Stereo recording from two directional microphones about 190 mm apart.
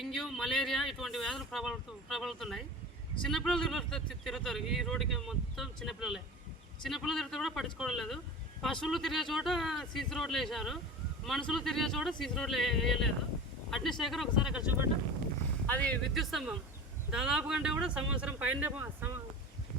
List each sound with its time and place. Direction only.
0.0 s speech: centre (ahead or behind)
15.6 s speech: 10° left (ahead or behind); by 19.2 s 10° right (ahead or behind)